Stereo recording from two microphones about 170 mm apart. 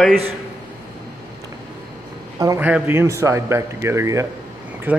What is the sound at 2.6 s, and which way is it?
A man's voice, 10° right (ahead or behind).